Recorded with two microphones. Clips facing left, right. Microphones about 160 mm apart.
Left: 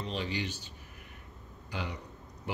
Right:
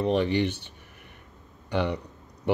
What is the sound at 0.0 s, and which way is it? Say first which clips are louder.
Speech: right 12 dB; 60° right (ahead or behind).